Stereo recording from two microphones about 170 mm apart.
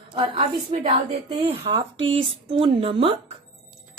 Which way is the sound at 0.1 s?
30° right (ahead or behind).